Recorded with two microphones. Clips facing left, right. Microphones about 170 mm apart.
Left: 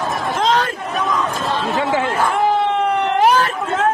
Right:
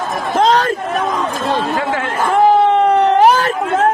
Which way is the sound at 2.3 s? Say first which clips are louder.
Right 9 dB; 40° right (ahead or behind).